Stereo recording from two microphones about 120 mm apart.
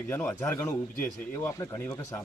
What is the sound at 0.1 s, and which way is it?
A man's voice, 20° left (ahead or behind).